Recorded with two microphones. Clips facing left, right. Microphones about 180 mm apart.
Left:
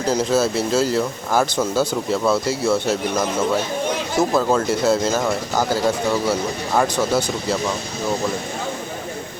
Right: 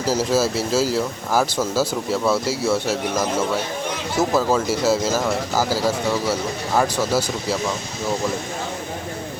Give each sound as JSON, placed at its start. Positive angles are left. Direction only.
{"t": 0.0, "sound": "speech", "side_deg": -5}
{"t": 4.4, "sound": "speech", "side_deg": -5}